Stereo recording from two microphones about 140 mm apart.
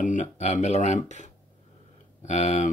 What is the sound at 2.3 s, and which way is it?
Speech, 55° left (ahead or behind).